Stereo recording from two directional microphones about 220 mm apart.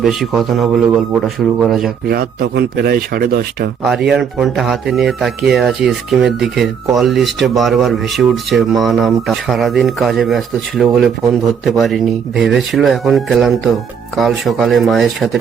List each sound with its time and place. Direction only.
0.0 s speech: centre (ahead or behind)
2.0 s speech: 45° right (ahead or behind)
3.8 s speech: centre (ahead or behind)